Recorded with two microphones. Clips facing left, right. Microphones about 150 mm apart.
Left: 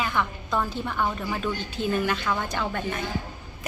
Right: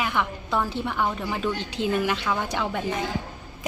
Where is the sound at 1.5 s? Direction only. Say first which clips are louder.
Right 1 dB; 90° right.